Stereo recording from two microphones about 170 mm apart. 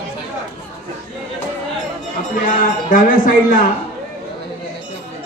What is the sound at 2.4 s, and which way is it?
A man's voice, 50° left (ahead or behind).